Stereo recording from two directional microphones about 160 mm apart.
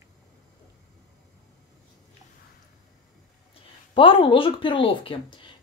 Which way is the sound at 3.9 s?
35° left (ahead or behind).